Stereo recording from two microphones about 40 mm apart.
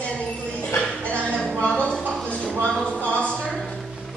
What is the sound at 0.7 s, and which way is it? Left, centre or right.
Music, left.